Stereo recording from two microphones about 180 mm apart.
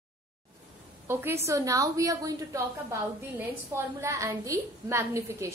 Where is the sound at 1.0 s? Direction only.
15° right (ahead or behind).